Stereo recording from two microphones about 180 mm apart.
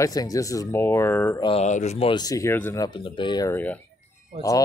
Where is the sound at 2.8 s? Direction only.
25° left (ahead or behind).